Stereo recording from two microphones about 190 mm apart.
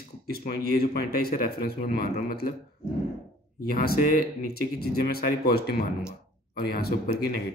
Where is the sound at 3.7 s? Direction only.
50° left (ahead or behind).